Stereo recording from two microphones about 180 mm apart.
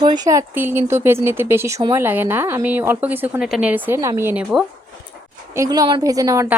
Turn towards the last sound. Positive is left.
turn(degrees=-15)  # may be behind; listen again after turning